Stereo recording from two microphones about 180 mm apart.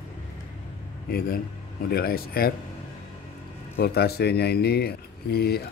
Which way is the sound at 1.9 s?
60° left (ahead or behind).